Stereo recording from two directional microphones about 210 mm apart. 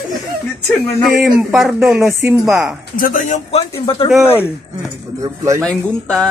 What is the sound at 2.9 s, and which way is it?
A man's voice, 40° left (ahead or behind).